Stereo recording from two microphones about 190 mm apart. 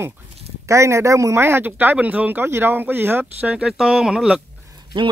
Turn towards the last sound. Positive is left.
turn(degrees=-25)  # may be behind; listen again after turning